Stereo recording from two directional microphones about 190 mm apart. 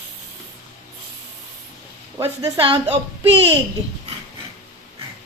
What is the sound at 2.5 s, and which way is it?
Speech, 30° right (ahead or behind).